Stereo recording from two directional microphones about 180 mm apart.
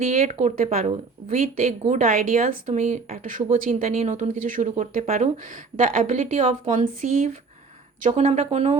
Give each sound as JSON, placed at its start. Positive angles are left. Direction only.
{"t": 0.0, "sound": "speech", "side_deg": -50}